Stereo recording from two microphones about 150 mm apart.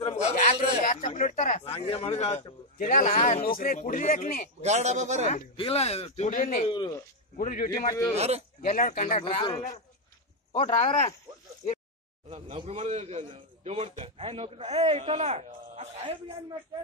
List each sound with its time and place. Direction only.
0.0 s a sound: 45° left (ahead or behind)
0.8 s speech: 60° left (ahead or behind)
1.6 s speech: 40° left (ahead or behind)
2.8 s speech: 60° left (ahead or behind)
4.6 s a man's voice: 50° right (ahead or behind)
5.2 s speech: 40° left (ahead or behind); by 6.6 s 65° left (ahead or behind)
6.6 s speech: 35° left (ahead or behind)
7.3 s speech: 65° left (ahead or behind)
8.2 s a man's voice: 45° right (ahead or behind)
8.6 s speech: 70° left (ahead or behind)
9.2 s speech: 35° left (ahead or behind)
12.3 s speech: 35° right (ahead or behind)
12.6 s a man's voice: 45° right (ahead or behind)